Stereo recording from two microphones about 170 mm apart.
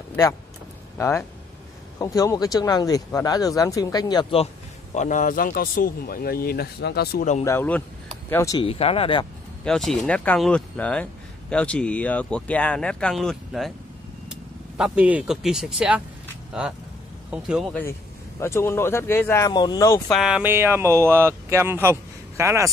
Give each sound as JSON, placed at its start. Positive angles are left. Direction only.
{"t": 0.1, "sound": "speech", "side_deg": 15}
{"t": 4.9, "sound": "speech", "side_deg": 50}
{"t": 7.4, "sound": "speech", "side_deg": 10}
{"t": 8.5, "sound": "speech", "side_deg": 35}
{"t": 9.7, "sound": "speech", "side_deg": 5}
{"t": 18.4, "sound": "speech", "side_deg": 15}
{"t": 20.1, "sound": "speech", "side_deg": -5}